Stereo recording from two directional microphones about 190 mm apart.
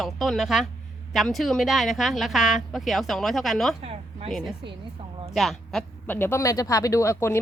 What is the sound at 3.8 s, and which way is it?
Speech, 30° right (ahead or behind).